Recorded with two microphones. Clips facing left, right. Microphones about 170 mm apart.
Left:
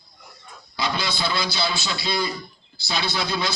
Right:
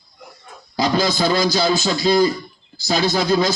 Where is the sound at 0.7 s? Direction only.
40° right (ahead or behind).